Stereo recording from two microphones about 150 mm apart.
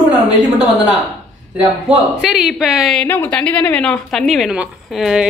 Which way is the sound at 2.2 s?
5° right (ahead or behind).